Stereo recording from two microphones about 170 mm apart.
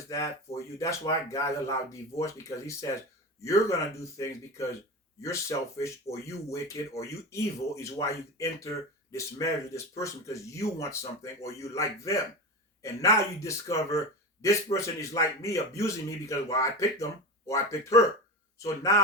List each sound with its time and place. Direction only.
0.1 s speech: 20° left (ahead or behind)